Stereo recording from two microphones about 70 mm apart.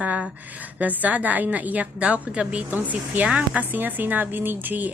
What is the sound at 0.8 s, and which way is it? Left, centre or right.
A woman's voice, right.